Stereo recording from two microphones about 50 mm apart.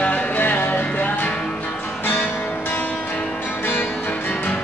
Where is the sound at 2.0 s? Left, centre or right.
Left.